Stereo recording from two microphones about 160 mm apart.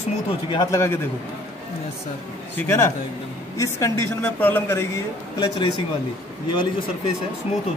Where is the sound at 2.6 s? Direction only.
15° left (ahead or behind).